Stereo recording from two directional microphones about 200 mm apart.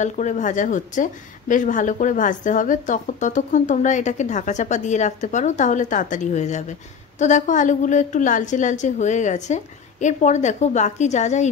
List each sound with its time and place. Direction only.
0.0 s a woman's voice: 35° left (ahead or behind)